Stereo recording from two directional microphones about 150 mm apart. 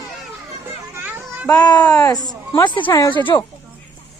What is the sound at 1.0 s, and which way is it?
Child singing, 10° right (ahead or behind).